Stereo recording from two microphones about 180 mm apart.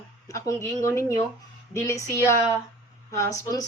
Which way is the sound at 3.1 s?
15° left (ahead or behind).